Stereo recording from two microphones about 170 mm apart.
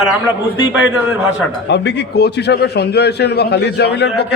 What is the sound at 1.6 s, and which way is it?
A man's voice, 90° left.